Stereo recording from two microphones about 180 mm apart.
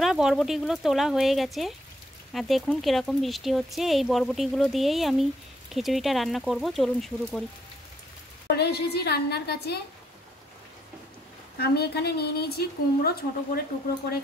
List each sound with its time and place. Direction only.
0.0 s speech: centre (ahead or behind)
8.5 s a woman's voice: 65° left (ahead or behind)
11.5 s a woman's voice: 60° left (ahead or behind)